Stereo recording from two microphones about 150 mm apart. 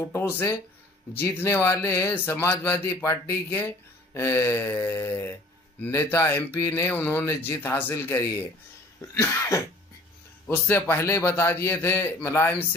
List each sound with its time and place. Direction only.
1.2 s speech: 20° left (ahead or behind)
9.0 s cough: 20° left (ahead or behind)
10.4 s speech: 15° left (ahead or behind)